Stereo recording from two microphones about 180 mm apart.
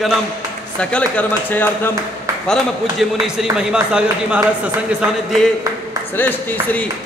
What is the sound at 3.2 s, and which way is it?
A man's voice, 5° right (ahead or behind).